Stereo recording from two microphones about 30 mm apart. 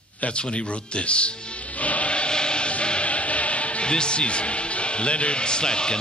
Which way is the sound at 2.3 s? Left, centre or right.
Left.